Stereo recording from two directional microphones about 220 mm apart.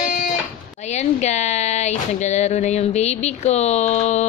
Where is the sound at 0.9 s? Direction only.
30° left (ahead or behind).